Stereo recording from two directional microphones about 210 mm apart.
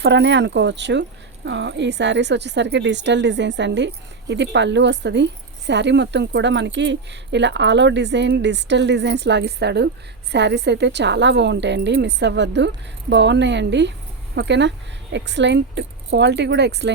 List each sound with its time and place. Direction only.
0.0 s a woman's voice: 55° right (ahead or behind)